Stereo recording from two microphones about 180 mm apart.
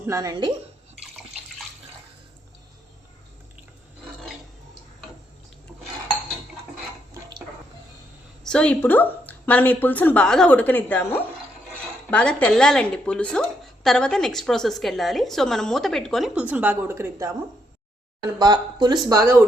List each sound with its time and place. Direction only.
0.0 s speech: 20° right (ahead or behind)
8.4 s a woman's voice: 5° left (ahead or behind); by 19.4 s 15° right (ahead or behind)